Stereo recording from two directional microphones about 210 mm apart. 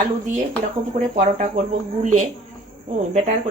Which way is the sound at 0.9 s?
40° right (ahead or behind).